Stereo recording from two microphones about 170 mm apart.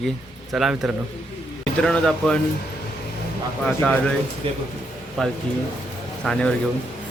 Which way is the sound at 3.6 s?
10° left (ahead or behind).